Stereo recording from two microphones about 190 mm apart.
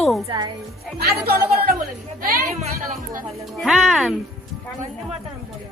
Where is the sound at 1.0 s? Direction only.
55° right (ahead or behind).